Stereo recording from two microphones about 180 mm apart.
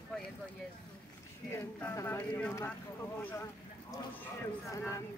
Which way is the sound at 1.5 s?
15° left (ahead or behind).